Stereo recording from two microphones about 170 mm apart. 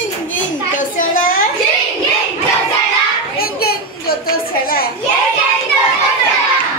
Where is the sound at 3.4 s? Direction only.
65° left (ahead or behind).